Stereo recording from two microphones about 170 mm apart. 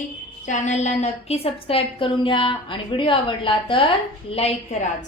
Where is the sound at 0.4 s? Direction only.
45° left (ahead or behind).